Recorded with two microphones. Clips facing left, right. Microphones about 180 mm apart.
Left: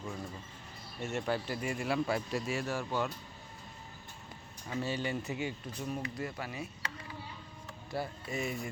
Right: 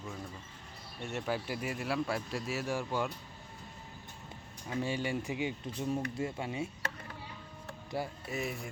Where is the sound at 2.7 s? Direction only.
15° right (ahead or behind).